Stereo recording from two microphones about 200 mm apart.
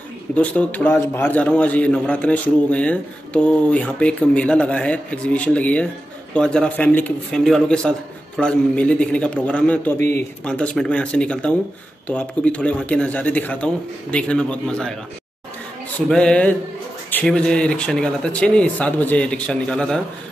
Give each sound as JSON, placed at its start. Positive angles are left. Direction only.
{"t": 0.4, "sound": "a man's voice", "side_deg": 5}
{"t": 16.1, "sound": "speech", "side_deg": 5}